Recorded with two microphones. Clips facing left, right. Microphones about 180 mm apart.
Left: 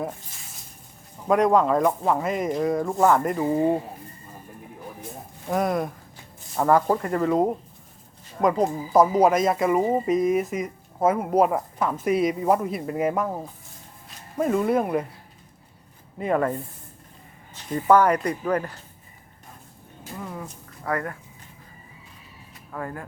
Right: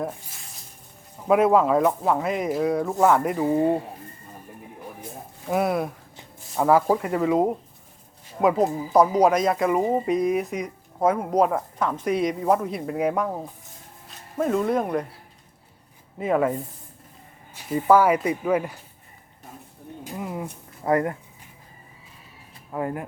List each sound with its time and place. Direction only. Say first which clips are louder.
1.3 s speech: right 1 dB; 5° right (ahead or behind)
5.5 s speech: right 1 dB; 5° right (ahead or behind)
16.1 s speech: right 1 dB; centre (ahead or behind)
20.1 s speech: right 3 dB; 15° right (ahead or behind)
22.7 s speech: right 5 dB; 20° right (ahead or behind)